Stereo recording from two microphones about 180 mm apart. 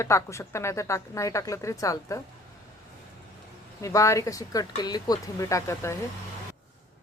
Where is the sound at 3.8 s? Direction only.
15° left (ahead or behind).